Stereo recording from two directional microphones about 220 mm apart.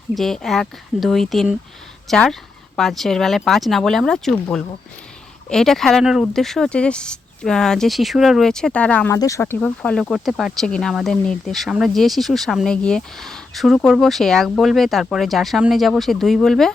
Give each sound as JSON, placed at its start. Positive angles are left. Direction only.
{"t": 0.1, "sound": "speech", "side_deg": 0}
{"t": 5.5, "sound": "speech", "side_deg": 0}